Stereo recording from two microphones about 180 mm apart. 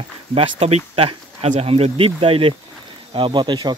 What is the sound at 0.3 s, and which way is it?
Speech, 35° right (ahead or behind).